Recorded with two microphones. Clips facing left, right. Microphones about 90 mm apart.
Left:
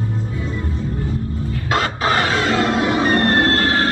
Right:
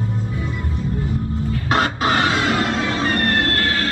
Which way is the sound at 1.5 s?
30° left (ahead or behind).